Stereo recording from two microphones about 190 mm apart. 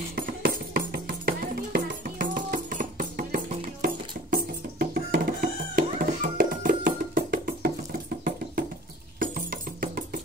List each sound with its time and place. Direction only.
0.1 s music: 50° right (ahead or behind)
9.2 s music: 50° right (ahead or behind)